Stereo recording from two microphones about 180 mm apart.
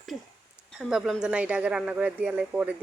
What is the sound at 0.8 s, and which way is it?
Speech, 5° right (ahead or behind).